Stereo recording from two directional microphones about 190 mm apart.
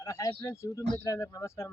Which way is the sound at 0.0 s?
15° left (ahead or behind).